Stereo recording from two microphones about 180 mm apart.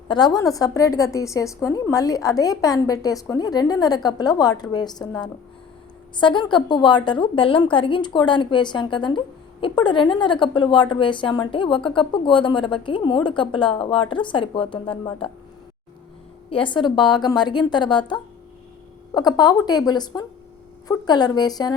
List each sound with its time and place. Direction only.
0.1 s a woman's voice: 25° left (ahead or behind)
16.5 s a woman's voice: 30° left (ahead or behind)